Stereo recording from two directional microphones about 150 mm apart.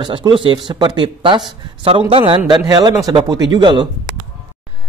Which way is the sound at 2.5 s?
25° right (ahead or behind).